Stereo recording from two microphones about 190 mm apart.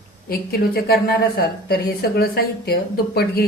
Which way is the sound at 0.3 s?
50° left (ahead or behind).